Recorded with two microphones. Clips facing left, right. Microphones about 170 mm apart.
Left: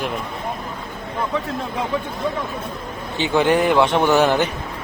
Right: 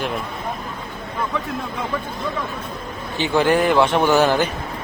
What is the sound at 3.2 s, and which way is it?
Speech, 15° left (ahead or behind).